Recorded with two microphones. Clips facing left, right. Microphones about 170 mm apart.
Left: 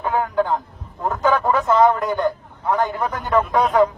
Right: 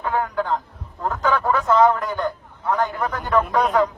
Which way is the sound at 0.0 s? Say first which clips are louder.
Left 2 dB; 15° left (ahead or behind).